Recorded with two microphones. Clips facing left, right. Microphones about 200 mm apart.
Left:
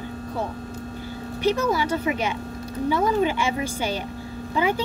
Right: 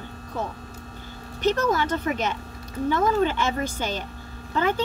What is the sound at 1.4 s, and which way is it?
A woman's voice, 10° left (ahead or behind).